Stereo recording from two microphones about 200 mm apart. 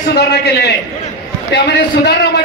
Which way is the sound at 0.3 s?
55° left (ahead or behind).